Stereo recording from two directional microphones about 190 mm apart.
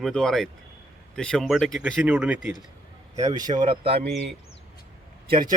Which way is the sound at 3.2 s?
20° right (ahead or behind).